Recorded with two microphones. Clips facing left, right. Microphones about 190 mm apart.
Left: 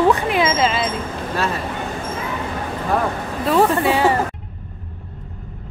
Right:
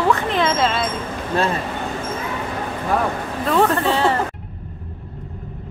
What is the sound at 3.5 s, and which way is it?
Speech, 10° left (ahead or behind).